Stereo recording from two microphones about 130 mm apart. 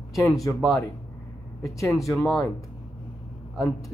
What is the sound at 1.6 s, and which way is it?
Speech, 25° left (ahead or behind).